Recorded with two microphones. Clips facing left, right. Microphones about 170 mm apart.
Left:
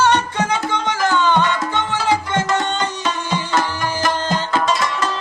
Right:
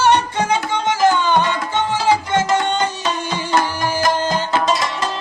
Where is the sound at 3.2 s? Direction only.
15° right (ahead or behind).